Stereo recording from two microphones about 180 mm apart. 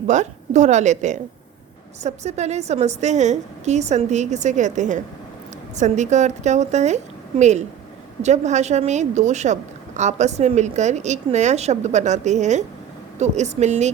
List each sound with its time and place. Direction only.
0.1 s a woman's voice: 40° right (ahead or behind)